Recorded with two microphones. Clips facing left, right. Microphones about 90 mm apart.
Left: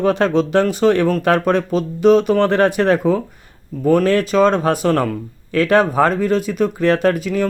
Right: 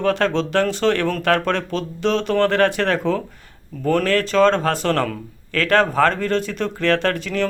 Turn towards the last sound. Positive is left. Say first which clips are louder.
# left 4 dB
turn(degrees=10)  # may be behind; listen again after turning